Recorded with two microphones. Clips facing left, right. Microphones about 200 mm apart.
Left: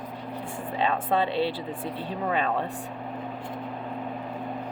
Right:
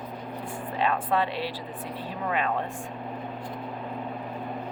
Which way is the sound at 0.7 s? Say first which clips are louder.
Left 1 dB; 25° left (ahead or behind).